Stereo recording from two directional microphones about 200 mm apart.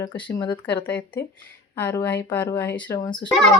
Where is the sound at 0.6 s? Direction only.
10° left (ahead or behind).